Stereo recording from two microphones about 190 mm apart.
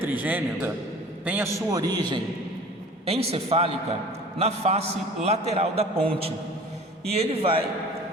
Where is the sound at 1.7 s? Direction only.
20° right (ahead or behind).